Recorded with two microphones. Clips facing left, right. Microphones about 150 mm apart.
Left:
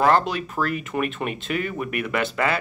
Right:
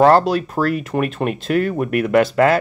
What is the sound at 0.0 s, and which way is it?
Speech, 40° right (ahead or behind).